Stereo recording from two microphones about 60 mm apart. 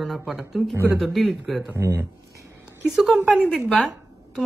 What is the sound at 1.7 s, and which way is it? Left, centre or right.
Speech, right.